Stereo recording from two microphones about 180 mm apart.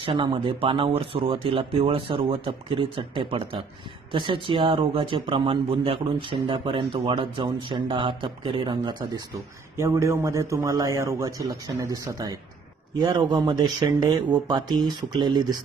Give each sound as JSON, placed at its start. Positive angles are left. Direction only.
{"t": 0.0, "sound": "a man's voice", "side_deg": -25}
{"t": 9.8, "sound": "a man's voice", "side_deg": -15}